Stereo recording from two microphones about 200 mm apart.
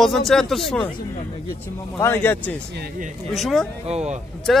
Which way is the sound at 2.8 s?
40° right (ahead or behind).